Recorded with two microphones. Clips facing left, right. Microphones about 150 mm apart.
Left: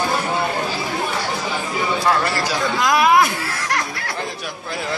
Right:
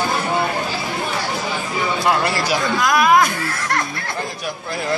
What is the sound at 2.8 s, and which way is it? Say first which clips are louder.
Speech: left 1 dB; 20° left (ahead or behind).